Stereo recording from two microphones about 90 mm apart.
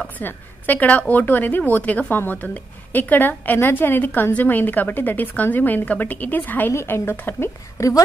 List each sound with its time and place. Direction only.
0.2 s a woman's voice: 20° left (ahead or behind); by 8.0 s 35° left (ahead or behind)